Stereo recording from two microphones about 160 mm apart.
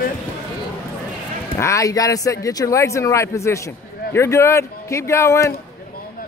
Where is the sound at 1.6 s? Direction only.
20° left (ahead or behind).